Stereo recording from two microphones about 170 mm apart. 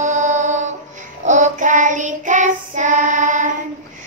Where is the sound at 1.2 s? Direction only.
45° right (ahead or behind).